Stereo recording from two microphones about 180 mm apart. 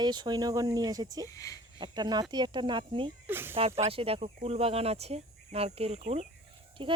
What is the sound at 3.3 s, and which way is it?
Speech, 10° right (ahead or behind).